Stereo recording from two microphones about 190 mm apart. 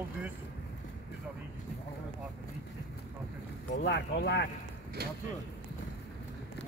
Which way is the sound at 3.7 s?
65° left (ahead or behind).